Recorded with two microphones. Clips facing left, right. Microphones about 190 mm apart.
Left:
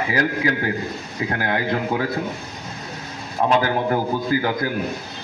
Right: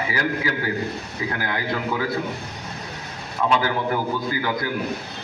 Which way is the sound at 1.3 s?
45° left (ahead or behind).